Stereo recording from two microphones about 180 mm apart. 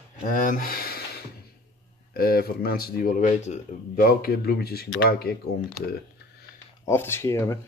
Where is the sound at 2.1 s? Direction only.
60° left (ahead or behind).